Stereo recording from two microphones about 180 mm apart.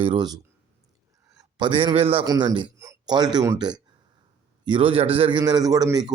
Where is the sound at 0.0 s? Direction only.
25° right (ahead or behind).